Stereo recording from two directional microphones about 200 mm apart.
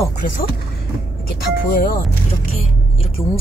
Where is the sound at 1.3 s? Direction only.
50° left (ahead or behind).